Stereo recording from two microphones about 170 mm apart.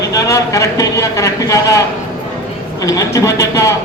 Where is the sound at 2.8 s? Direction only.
20° left (ahead or behind).